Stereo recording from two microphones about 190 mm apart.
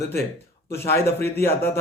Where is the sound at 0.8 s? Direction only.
55° left (ahead or behind).